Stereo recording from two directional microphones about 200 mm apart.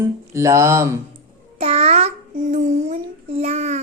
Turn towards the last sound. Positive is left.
turn(degrees=-35)  # may be behind; listen again after turning